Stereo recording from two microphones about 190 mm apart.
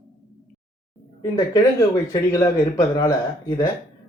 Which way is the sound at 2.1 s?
20° left (ahead or behind).